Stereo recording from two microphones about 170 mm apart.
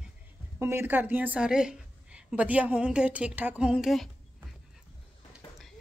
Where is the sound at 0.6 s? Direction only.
15° right (ahead or behind).